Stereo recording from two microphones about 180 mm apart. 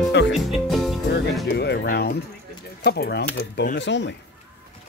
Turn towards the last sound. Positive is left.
turn(degrees=75)  # may be behind; listen again after turning